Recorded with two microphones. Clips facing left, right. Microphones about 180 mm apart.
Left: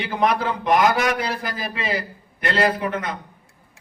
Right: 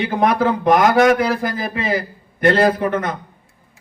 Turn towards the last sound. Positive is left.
turn(degrees=-50)  # may be behind; listen again after turning